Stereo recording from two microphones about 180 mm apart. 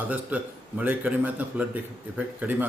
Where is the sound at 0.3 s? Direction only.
10° right (ahead or behind).